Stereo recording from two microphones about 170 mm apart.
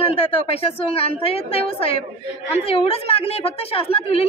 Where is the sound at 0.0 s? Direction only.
35° left (ahead or behind).